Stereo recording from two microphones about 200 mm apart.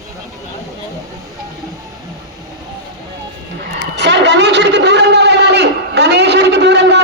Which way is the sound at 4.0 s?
60° right (ahead or behind).